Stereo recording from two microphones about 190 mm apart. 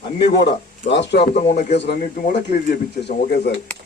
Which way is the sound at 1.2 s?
35° left (ahead or behind).